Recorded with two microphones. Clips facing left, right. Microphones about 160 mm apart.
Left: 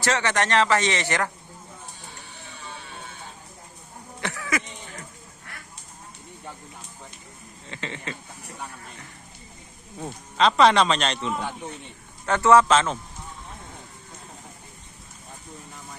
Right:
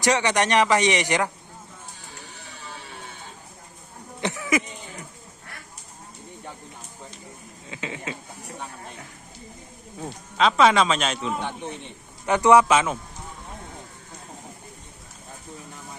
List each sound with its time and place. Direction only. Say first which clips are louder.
0.0 s speech: right 3 dB; 15° right (ahead or behind)
4.2 s a sound: right 5 dB; 15° right (ahead or behind)
7.7 s speech: right 1 dB; 10° right (ahead or behind)
10.0 s speech: even; centre (ahead or behind)
12.2 s speech: right 1 dB; 15° right (ahead or behind)